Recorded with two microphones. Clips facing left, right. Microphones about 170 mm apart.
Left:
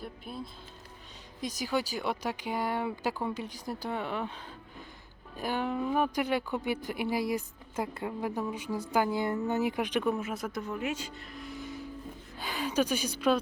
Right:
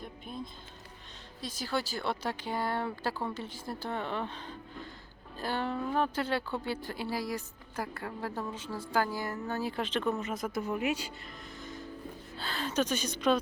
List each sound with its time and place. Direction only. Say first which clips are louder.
0.0 s music: left 1 dB; 5° left (ahead or behind)
1.4 s speech: left 3 dB; 15° left (ahead or behind)
10.6 s speech: right 5 dB; 10° right (ahead or behind)
11.3 s music: left 4 dB; 10° left (ahead or behind)
12.4 s speech: left 2 dB; 15° left (ahead or behind)